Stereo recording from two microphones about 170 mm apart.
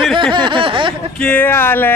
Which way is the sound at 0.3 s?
25° right (ahead or behind).